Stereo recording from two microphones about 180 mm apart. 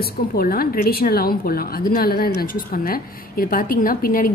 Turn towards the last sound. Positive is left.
turn(degrees=50)  # may be behind; listen again after turning